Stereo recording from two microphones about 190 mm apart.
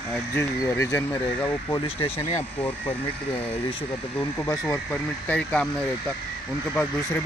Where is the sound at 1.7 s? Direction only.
30° left (ahead or behind).